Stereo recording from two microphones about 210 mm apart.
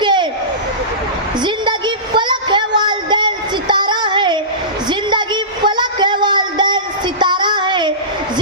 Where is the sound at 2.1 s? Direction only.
20° right (ahead or behind).